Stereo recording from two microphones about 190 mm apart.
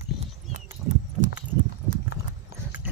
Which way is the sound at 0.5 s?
40° right (ahead or behind).